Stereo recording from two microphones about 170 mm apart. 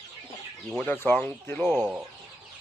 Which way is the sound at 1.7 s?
5° right (ahead or behind).